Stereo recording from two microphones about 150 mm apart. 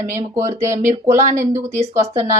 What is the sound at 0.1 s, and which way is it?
Speech, 20° right (ahead or behind).